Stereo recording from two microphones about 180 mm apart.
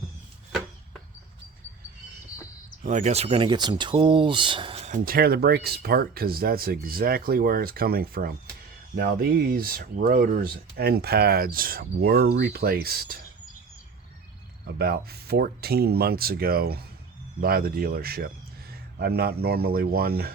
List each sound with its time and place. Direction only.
2.8 s speech: 40° right (ahead or behind); by 13.1 s 60° right (ahead or behind)
14.7 s speech: 60° right (ahead or behind)